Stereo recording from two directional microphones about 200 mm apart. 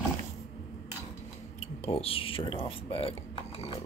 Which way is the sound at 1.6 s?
30° left (ahead or behind).